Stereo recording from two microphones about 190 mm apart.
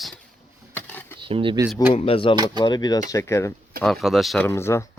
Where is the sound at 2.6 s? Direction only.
20° left (ahead or behind).